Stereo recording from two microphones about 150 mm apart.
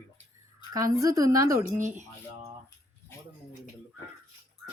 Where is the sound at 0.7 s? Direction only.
20° right (ahead or behind).